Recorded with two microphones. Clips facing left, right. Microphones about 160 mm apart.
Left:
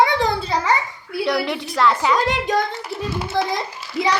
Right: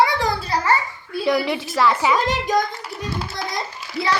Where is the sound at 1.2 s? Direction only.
5° right (ahead or behind).